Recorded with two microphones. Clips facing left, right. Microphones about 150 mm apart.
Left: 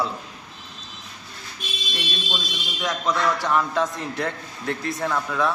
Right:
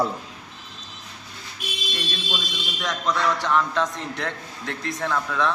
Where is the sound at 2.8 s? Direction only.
5° left (ahead or behind).